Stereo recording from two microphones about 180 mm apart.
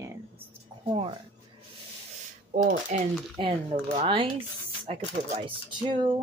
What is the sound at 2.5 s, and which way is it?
Speech, 45° right (ahead or behind).